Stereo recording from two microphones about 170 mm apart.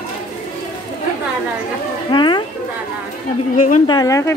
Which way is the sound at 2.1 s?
30° left (ahead or behind).